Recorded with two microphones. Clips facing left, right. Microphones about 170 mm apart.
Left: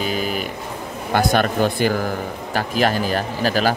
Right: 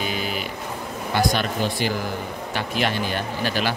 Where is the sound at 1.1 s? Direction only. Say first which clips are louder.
Left 5 dB; 50° left (ahead or behind).